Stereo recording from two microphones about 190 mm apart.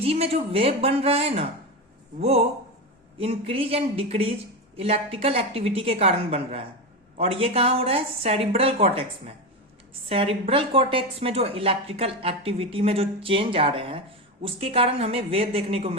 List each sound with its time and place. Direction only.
0.0 s speech: 30° right (ahead or behind)